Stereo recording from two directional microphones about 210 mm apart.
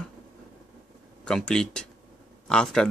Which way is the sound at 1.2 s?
5° left (ahead or behind).